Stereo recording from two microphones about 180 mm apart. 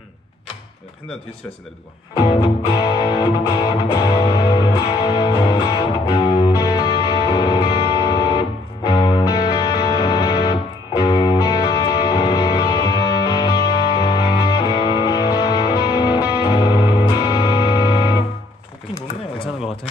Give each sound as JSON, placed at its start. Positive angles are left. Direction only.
{"t": 2.1, "sound": "music", "side_deg": 25}